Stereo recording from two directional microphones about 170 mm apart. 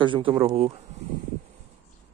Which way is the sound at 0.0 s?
30° right (ahead or behind).